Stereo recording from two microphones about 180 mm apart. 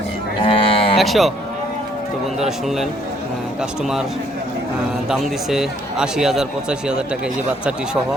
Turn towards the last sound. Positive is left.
turn(degrees=-5)  # may be behind; listen again after turning